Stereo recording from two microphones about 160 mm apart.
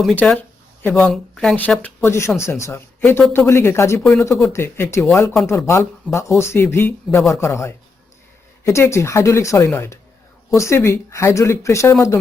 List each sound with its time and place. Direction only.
0.0 s speech: 5° left (ahead or behind)